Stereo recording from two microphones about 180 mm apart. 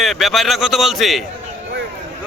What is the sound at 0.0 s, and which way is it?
A man's voice, centre (ahead or behind).